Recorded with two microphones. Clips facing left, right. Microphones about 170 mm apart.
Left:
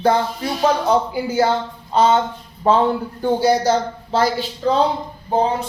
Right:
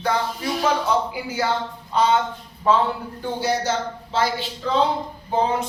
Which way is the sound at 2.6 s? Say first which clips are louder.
Left 4 dB; 40° left (ahead or behind).